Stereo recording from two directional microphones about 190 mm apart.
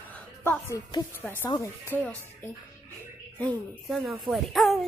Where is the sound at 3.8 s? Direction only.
Centre (ahead or behind).